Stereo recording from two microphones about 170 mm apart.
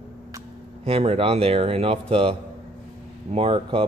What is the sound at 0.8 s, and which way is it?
Speech, 35° right (ahead or behind).